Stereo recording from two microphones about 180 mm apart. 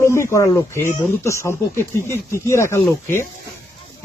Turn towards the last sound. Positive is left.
turn(degrees=15)  # may be behind; listen again after turning